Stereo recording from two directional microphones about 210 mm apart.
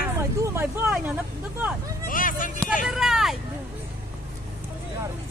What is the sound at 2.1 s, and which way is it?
Speech, 40° left (ahead or behind).